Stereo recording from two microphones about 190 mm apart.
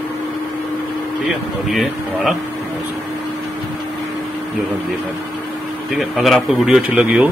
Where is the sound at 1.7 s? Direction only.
Centre (ahead or behind).